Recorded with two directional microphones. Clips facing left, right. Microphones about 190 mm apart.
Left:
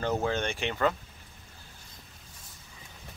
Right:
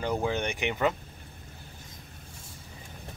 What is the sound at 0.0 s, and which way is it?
Speech, 15° right (ahead or behind).